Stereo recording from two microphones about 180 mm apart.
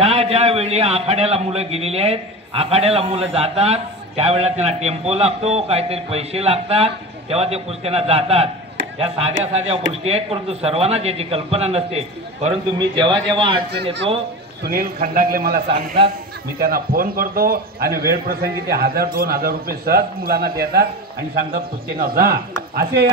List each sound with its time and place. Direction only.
0.0 s a man's voice: 35° right (ahead or behind)
10.0 s a man's voice: 35° right (ahead or behind)
14.6 s a man's voice: 55° right (ahead or behind)